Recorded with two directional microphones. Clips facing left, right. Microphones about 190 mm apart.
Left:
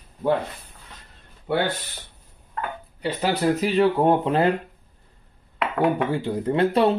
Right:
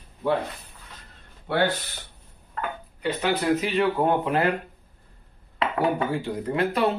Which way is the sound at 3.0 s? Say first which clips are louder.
Left 2 dB; 35° left (ahead or behind).